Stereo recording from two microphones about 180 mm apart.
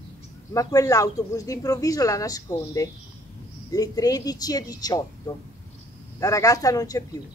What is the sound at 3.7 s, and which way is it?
A woman's voice, 20° left (ahead or behind).